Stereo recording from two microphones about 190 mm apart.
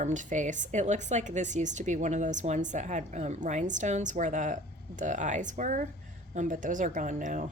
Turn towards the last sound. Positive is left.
turn(degrees=-40)  # may be behind; listen again after turning